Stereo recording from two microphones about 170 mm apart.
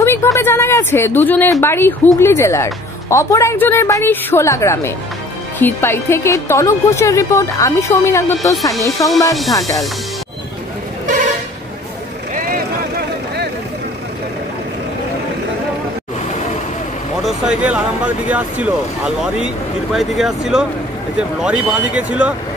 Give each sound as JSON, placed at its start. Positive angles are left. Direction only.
{"t": 0.0, "sound": "a woman's voice", "side_deg": 15}
{"t": 9.3, "sound": "speech", "side_deg": 0}
{"t": 11.1, "sound": "vehicle horn", "side_deg": -45}
{"t": 12.4, "sound": "vehicle", "side_deg": -70}
{"t": 17.2, "sound": "speech", "side_deg": -5}